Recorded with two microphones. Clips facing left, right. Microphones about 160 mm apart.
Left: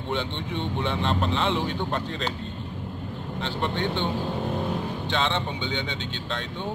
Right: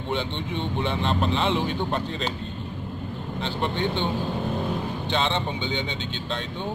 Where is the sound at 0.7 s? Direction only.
5° right (ahead or behind).